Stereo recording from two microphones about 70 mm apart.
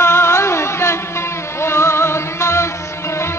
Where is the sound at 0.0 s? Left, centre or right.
Left.